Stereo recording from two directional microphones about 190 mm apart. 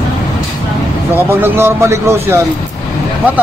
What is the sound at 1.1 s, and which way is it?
A man's voice, 10° right (ahead or behind).